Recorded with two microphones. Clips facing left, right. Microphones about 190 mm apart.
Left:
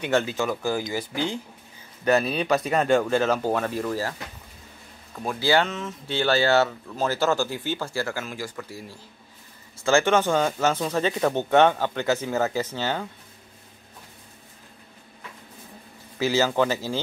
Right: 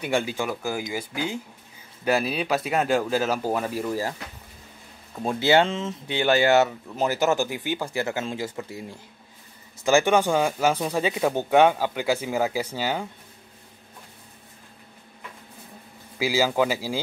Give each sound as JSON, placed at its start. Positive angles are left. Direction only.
{"t": 0.0, "sound": "speech", "side_deg": -10}
{"t": 5.1, "sound": "speech", "side_deg": -25}
{"t": 16.2, "sound": "speech", "side_deg": -10}